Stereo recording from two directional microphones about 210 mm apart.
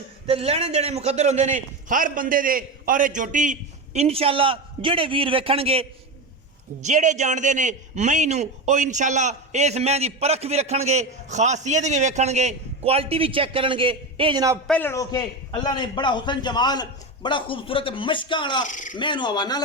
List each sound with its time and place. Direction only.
0.3 s a man's voice: 30° right (ahead or behind)
6.8 s a man's voice: 35° right (ahead or behind); by 14.6 s 15° right (ahead or behind)
14.7 s a man's voice: 10° left (ahead or behind)
18.6 s speech: 35° left (ahead or behind)
18.9 s a man's voice: 20° left (ahead or behind)